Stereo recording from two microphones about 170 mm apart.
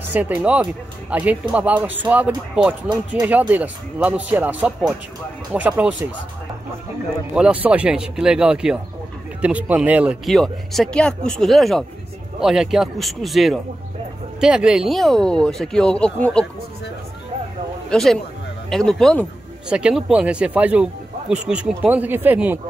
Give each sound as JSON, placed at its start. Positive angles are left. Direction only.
{"t": 0.1, "sound": "speech", "side_deg": -10}
{"t": 7.3, "sound": "speech", "side_deg": -5}
{"t": 17.8, "sound": "speech", "side_deg": 5}